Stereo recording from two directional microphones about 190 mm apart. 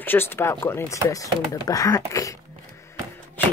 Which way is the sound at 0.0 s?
10° left (ahead or behind).